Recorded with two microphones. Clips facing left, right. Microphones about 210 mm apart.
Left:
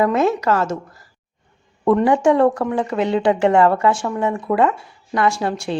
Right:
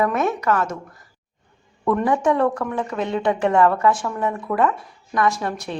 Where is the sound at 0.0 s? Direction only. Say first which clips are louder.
Left 4 dB; 30° left (ahead or behind).